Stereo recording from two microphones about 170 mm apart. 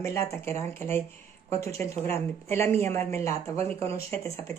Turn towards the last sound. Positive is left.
turn(degrees=15)  # may be behind; listen again after turning